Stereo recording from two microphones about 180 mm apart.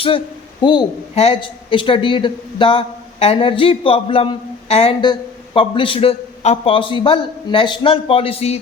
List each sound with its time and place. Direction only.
0.6 s a man's voice: 25° left (ahead or behind)